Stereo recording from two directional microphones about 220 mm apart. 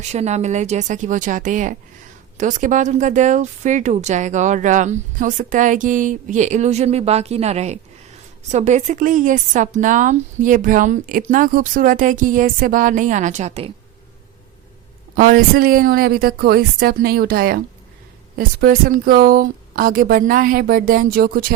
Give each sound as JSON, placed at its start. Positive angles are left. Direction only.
{"t": 0.1, "sound": "speech", "side_deg": -30}
{"t": 15.1, "sound": "a woman's voice", "side_deg": -40}